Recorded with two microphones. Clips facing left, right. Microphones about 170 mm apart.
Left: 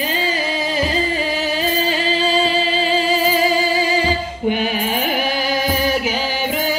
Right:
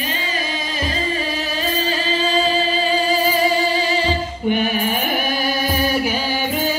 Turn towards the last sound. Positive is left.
turn(degrees=20)  # may be behind; listen again after turning